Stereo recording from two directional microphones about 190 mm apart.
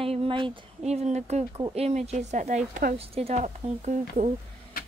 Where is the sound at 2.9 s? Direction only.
30° right (ahead or behind).